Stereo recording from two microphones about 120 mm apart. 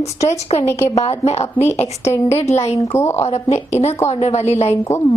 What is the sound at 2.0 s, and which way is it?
A woman's voice, 20° left (ahead or behind).